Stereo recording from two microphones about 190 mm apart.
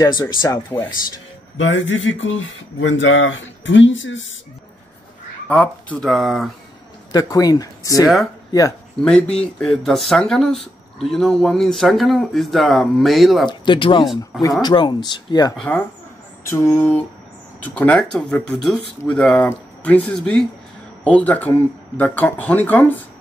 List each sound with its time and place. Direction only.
0.2 s speech: 20° left (ahead or behind)
1.6 s speech: 80° left
5.5 s speech: 5° left (ahead or behind)
7.1 s speech: 20° left (ahead or behind)
9.0 s speech: 5° left (ahead or behind)
13.5 s speech: 25° left (ahead or behind)
15.5 s speech: 5° left (ahead or behind)